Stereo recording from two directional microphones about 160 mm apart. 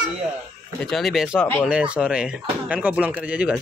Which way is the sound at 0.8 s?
Centre (ahead or behind).